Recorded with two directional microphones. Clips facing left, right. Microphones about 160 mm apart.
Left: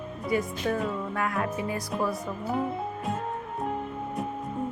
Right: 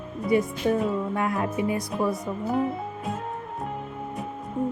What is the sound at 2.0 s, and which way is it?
Speech, centre (ahead or behind).